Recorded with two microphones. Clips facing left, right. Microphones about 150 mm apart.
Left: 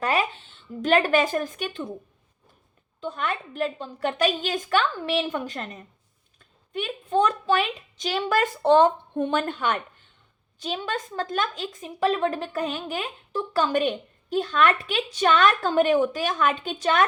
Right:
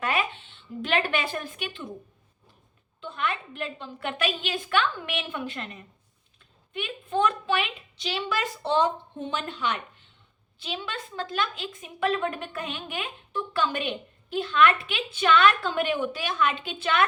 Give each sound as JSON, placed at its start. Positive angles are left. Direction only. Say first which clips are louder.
{"t": 0.0, "sound": "a woman's voice", "louder": "left 3 dB", "side_deg": 35}
{"t": 3.0, "sound": "a woman's voice", "louder": "left 2 dB", "side_deg": 40}